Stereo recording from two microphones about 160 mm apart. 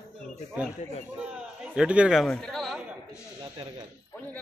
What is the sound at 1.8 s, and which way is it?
Speech, 5° right (ahead or behind).